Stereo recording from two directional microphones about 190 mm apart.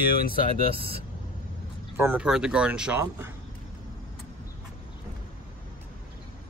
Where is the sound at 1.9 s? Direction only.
10° right (ahead or behind).